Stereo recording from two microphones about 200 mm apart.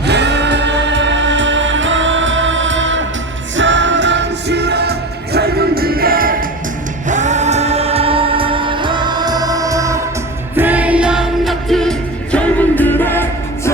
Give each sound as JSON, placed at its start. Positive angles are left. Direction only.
{"t": 0.0, "sound": "music", "side_deg": -55}